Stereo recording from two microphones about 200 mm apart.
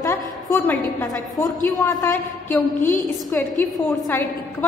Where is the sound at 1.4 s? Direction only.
20° left (ahead or behind).